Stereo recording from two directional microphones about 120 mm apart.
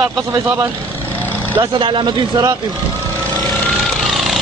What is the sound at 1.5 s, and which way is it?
Speech, 45° right (ahead or behind).